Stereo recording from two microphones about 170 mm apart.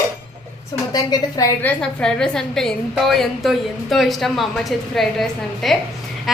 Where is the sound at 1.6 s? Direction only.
5° left (ahead or behind).